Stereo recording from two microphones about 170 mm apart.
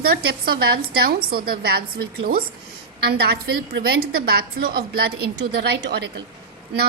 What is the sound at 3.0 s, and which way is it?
A woman's voice, 65° right (ahead or behind).